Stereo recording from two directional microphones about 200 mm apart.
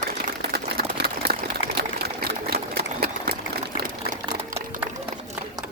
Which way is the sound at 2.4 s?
55° right (ahead or behind).